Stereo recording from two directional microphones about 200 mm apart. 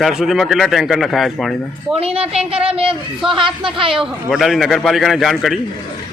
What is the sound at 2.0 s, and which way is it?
Speech, 30° right (ahead or behind).